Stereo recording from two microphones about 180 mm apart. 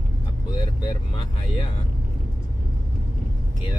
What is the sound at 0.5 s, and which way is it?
Vehicle, 25° left (ahead or behind).